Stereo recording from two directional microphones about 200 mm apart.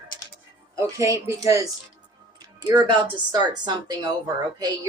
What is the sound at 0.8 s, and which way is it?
Speech, 15° right (ahead or behind).